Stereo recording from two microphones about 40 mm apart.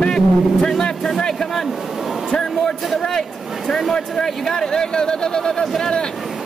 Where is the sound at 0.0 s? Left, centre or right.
Centre.